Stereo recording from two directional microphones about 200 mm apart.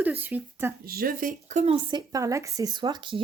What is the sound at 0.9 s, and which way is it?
Speech, 45° right (ahead or behind).